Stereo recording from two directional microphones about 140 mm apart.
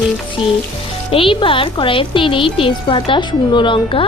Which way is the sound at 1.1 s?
40° left (ahead or behind).